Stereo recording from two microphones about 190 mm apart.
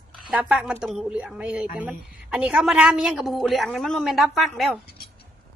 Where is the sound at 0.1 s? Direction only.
5° right (ahead or behind).